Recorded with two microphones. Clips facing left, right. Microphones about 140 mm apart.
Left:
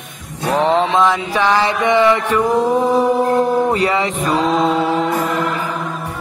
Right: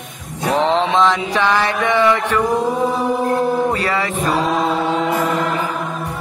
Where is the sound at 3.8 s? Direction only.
20° left (ahead or behind).